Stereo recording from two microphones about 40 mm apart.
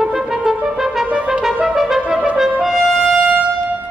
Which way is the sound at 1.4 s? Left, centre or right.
Centre.